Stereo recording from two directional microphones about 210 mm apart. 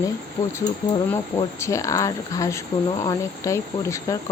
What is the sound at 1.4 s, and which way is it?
Speech, 15° left (ahead or behind).